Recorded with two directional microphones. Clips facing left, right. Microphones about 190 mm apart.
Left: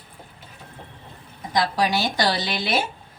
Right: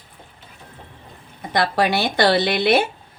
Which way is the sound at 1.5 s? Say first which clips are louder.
Right 3 dB; 60° right (ahead or behind).